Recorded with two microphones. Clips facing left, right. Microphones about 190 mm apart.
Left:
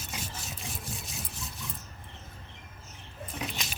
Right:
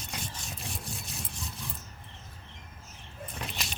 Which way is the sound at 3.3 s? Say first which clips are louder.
Left 3 dB; centre (ahead or behind).